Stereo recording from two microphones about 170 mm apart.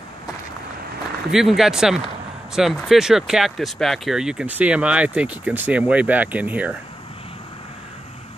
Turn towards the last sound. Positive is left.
turn(degrees=-10)  # may be behind; listen again after turning